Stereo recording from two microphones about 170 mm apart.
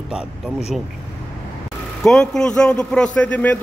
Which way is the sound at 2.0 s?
5° left (ahead or behind).